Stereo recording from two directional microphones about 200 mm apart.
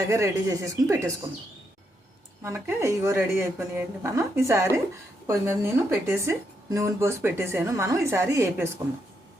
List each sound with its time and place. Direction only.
0.1 s a woman's voice: 15° right (ahead or behind)
2.4 s a woman's voice: 15° right (ahead or behind)